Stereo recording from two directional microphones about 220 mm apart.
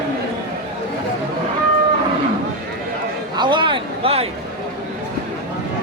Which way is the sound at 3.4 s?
20° right (ahead or behind).